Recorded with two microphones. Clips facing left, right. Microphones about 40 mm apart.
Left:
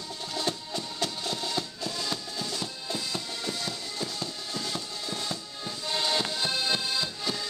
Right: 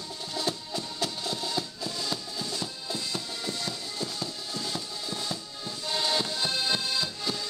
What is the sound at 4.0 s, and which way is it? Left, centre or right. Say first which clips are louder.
Music: even; centre.